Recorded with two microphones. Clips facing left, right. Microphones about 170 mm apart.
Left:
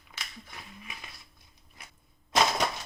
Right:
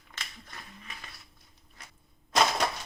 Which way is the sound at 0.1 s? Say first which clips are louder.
Left 1 dB; 10° left (ahead or behind).